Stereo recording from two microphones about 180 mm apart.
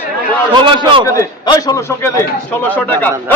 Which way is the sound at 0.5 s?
30° right (ahead or behind).